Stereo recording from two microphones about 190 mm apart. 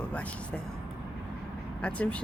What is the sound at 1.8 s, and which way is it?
Speech, 5° left (ahead or behind).